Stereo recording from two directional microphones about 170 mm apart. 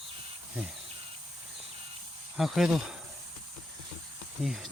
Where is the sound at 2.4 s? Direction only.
Centre (ahead or behind).